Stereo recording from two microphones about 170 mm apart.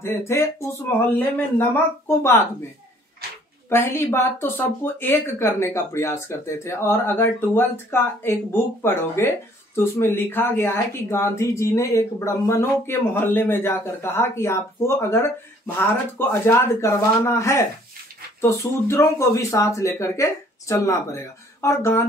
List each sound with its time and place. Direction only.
0.0 s speech: 15° left (ahead or behind)
3.6 s speech: 15° left (ahead or behind)
16.2 s speech: 15° left (ahead or behind)